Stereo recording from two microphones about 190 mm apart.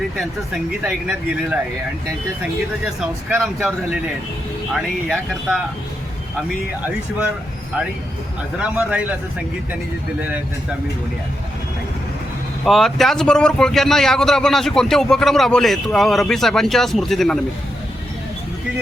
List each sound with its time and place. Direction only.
0.2 s speech: 5° right (ahead or behind)
8.5 s a man's voice: 5° right (ahead or behind)
10.2 s a man's voice: 10° right (ahead or behind)
12.6 s speech: centre (ahead or behind)